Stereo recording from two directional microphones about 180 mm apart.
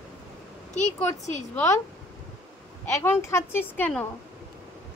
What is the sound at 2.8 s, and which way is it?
A woman's voice, 15° left (ahead or behind).